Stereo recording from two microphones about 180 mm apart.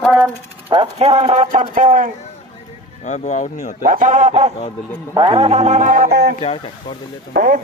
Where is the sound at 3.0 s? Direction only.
40° left (ahead or behind).